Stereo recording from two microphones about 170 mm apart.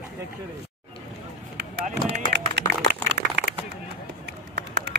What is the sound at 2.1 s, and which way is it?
Run, 90° right.